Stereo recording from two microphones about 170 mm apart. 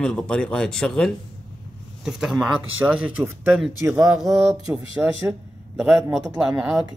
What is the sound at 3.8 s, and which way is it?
Speech, 15° right (ahead or behind).